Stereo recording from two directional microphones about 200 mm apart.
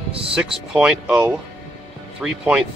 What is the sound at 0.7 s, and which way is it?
Speech, 5° right (ahead or behind).